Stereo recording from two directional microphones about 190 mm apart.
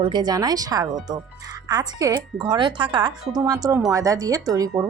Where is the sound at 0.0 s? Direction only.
25° right (ahead or behind).